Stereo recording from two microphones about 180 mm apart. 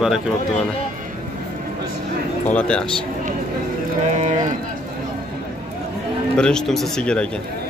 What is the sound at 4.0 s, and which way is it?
Speech, 40° right (ahead or behind).